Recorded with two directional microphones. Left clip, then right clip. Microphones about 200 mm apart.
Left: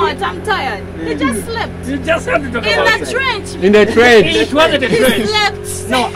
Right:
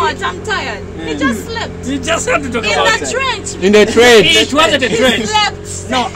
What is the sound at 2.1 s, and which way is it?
Speech, 60° right (ahead or behind).